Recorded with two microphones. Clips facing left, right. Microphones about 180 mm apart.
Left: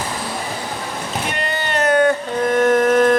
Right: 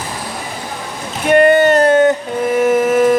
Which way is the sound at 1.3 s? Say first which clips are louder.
Right 19 dB; 55° right (ahead or behind).